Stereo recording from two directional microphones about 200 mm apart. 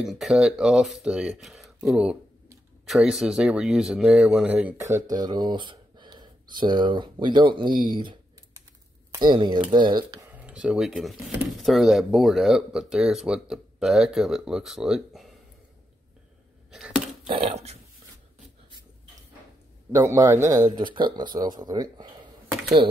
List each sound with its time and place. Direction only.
0.0 s speech: centre (ahead or behind)
5.0 s speech: 20° right (ahead or behind); by 15.3 s centre (ahead or behind)
16.7 s a sound: 5° right (ahead or behind)
17.3 s dog: 30° right (ahead or behind)
20.0 s speech: 15° right (ahead or behind)